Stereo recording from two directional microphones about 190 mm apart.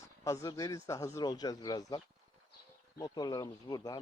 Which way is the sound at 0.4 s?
15° left (ahead or behind).